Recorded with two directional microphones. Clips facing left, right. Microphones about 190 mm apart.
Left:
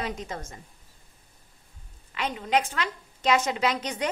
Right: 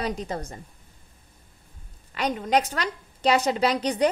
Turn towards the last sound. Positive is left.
turn(degrees=-35)  # may be behind; listen again after turning